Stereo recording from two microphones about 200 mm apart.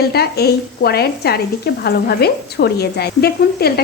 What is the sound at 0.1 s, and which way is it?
Speech, 50° left (ahead or behind).